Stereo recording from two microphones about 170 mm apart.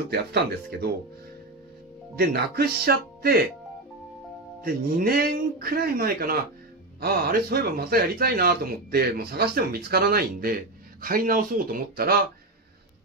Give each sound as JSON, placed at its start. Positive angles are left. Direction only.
{"t": 0.1, "sound": "speech", "side_deg": -75}
{"t": 2.1, "sound": "a man's voice", "side_deg": -65}
{"t": 4.6, "sound": "a man's voice", "side_deg": -60}